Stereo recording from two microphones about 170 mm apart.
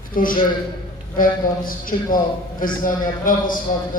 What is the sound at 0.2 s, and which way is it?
A man's voice, 55° left (ahead or behind).